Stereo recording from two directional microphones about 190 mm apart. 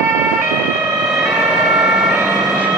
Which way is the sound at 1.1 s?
5° right (ahead or behind).